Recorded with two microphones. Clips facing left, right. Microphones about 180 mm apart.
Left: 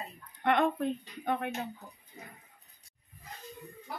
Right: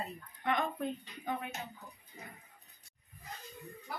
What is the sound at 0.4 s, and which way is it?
Speech, 70° left (ahead or behind).